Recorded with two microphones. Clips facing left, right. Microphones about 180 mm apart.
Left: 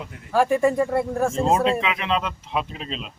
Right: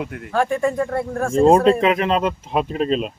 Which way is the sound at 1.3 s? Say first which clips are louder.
Right 10 dB; 45° right (ahead or behind).